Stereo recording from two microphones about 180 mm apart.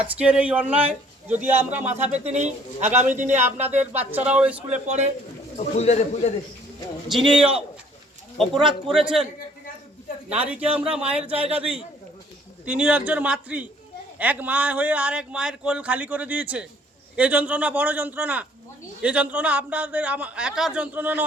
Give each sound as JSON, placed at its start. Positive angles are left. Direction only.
{"t": 0.2, "sound": "a man's voice", "side_deg": -5}
{"t": 1.8, "sound": "a man's voice", "side_deg": -40}
{"t": 4.3, "sound": "a man's voice", "side_deg": -5}
{"t": 5.5, "sound": "speech", "side_deg": 40}
{"t": 7.1, "sound": "a man's voice", "side_deg": -5}
{"t": 10.3, "sound": "a man's voice", "side_deg": -5}
{"t": 12.6, "sound": "a man's voice", "side_deg": -5}